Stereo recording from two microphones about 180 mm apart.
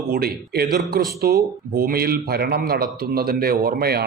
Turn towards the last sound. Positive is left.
turn(degrees=-60)  # may be behind; listen again after turning